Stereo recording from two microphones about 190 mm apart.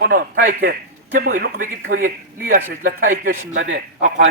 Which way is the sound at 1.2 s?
45° right (ahead or behind).